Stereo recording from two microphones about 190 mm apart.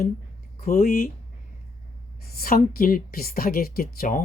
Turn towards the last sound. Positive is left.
turn(degrees=50)  # may be behind; listen again after turning